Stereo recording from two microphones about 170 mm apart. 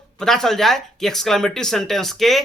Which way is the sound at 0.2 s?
5° left (ahead or behind).